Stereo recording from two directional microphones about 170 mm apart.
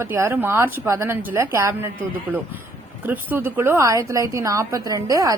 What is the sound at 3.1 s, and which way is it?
A woman's voice, 10° right (ahead or behind).